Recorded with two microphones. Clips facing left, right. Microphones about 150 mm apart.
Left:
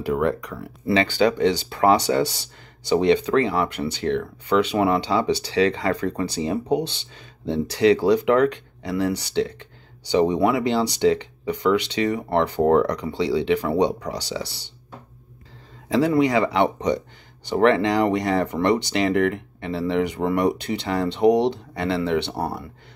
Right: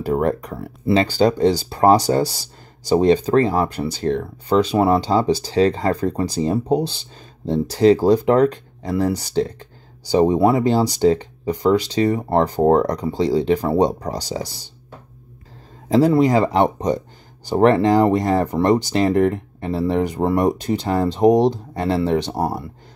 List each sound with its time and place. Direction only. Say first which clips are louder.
0.0 s speech: right 3 dB; 40° right (ahead or behind)
16.1 s speech: right 3 dB; 40° right (ahead or behind)